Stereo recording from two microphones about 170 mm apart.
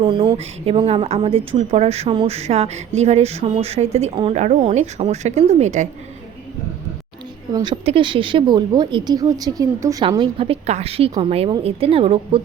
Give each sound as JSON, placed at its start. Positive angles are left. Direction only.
{"t": 0.0, "sound": "speech", "side_deg": -30}
{"t": 7.5, "sound": "speech", "side_deg": -25}